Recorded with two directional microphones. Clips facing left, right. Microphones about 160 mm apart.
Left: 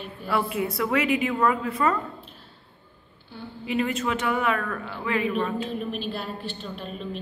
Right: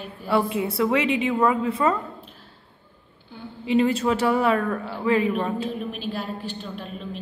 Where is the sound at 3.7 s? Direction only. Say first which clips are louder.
Right 6 dB; 30° right (ahead or behind).